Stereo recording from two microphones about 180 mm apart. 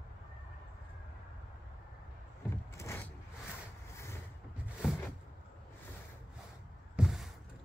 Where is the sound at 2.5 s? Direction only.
15° left (ahead or behind).